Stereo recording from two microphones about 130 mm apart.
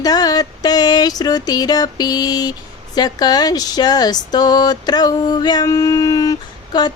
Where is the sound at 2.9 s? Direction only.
30° left (ahead or behind).